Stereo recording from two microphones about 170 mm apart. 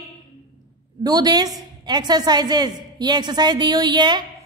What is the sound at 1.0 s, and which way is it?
A woman's voice, 20° right (ahead or behind).